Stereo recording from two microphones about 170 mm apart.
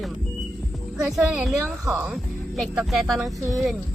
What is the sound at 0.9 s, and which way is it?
Speech, 5° right (ahead or behind).